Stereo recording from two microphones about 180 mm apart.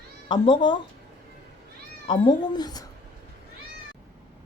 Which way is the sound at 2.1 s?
25° left (ahead or behind).